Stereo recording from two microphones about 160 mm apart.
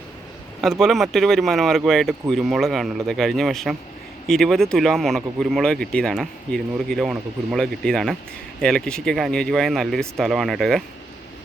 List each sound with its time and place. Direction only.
0.6 s speech: centre (ahead or behind)